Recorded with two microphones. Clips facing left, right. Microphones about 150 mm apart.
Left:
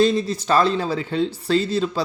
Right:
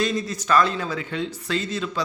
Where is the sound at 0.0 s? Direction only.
30° left (ahead or behind).